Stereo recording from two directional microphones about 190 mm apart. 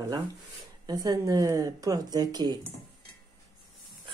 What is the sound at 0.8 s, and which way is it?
Speech, 20° right (ahead or behind).